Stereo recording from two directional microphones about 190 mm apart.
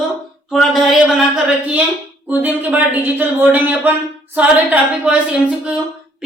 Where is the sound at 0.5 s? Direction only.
Centre (ahead or behind).